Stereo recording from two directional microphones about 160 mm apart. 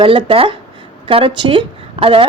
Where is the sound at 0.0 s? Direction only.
35° right (ahead or behind).